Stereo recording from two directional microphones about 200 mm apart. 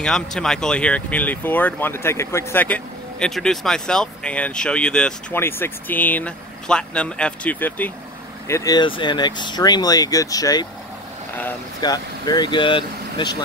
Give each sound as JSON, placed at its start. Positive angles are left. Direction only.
{"t": 0.0, "sound": "speech", "side_deg": 5}
{"t": 11.8, "sound": "speech", "side_deg": 20}